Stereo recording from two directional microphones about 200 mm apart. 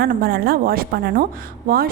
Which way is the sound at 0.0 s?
50° right (ahead or behind).